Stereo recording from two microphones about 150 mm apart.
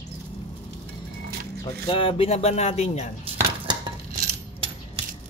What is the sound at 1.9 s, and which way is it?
Speech, 35° left (ahead or behind).